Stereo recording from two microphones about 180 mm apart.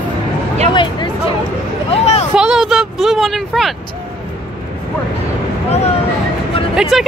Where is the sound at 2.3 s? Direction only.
5° right (ahead or behind).